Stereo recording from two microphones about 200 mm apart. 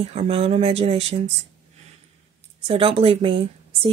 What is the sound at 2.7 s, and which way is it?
Speech, 30° right (ahead or behind).